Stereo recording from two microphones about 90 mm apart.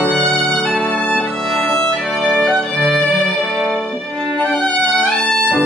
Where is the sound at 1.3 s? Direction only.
Centre (ahead or behind).